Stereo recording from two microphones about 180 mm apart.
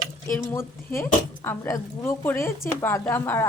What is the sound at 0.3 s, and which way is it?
A woman's voice, 15° left (ahead or behind).